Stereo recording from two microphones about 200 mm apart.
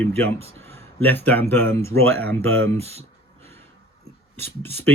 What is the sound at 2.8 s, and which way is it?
Speech, 30° right (ahead or behind).